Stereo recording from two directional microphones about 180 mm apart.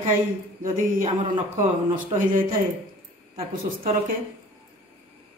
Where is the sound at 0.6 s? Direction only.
50° right (ahead or behind).